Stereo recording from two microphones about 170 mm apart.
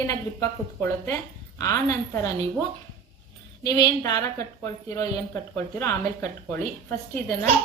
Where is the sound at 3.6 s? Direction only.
25° left (ahead or behind).